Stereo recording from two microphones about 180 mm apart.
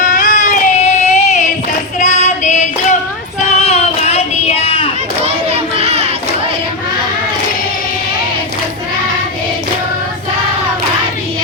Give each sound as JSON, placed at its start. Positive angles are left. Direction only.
{"t": 0.1, "sound": "a sound", "side_deg": 50}
{"t": 2.0, "sound": "female singing", "side_deg": 40}
{"t": 3.4, "sound": "child singing", "side_deg": 35}
{"t": 5.2, "sound": "child singing", "side_deg": -35}